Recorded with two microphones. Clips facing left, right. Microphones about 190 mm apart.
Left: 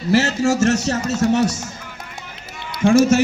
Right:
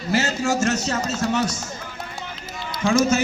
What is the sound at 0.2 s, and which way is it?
A man's voice, 80° left.